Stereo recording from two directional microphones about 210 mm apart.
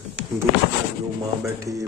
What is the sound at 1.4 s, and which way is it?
Speech, 15° right (ahead or behind).